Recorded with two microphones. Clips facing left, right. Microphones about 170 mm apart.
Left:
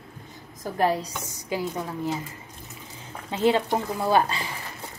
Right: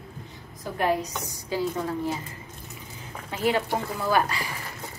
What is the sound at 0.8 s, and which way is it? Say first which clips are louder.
A woman's voice: left 1 dB; 35° left (ahead or behind).